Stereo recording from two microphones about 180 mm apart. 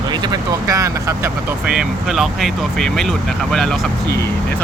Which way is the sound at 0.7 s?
15° right (ahead or behind).